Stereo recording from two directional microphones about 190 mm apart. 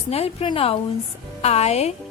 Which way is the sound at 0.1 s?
30° left (ahead or behind).